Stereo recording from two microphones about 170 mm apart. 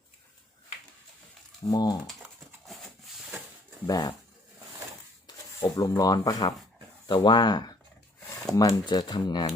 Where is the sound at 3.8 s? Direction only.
20° left (ahead or behind).